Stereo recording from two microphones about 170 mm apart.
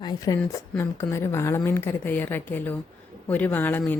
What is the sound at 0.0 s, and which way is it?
A woman's voice, 25° left (ahead or behind).